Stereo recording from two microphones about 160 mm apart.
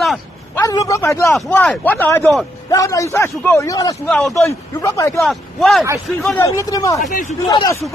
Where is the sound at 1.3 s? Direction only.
5° left (ahead or behind); by 4.0 s 20° left (ahead or behind).